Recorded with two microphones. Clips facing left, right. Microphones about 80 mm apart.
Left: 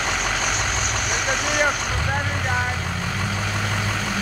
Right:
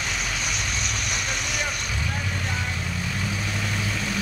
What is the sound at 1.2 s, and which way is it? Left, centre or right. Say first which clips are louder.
Speech: left 8 dB; left.